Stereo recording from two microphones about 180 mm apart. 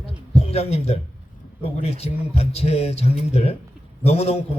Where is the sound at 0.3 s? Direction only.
35° left (ahead or behind).